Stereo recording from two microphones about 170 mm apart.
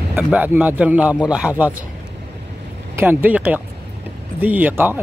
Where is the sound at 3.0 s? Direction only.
10° right (ahead or behind).